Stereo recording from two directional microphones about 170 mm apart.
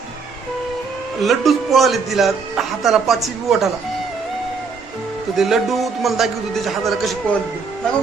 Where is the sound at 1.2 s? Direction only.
Centre (ahead or behind).